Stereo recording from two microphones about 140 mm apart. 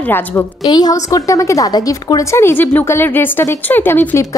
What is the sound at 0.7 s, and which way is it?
A woman's voice, 25° left (ahead or behind).